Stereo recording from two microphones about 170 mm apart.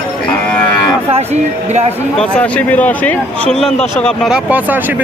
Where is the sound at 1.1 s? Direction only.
40° right (ahead or behind).